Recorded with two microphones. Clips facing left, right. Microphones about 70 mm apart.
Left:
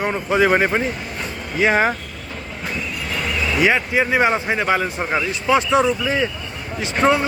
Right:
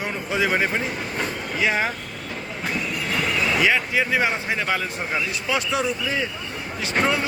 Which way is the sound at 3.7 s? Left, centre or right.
Left.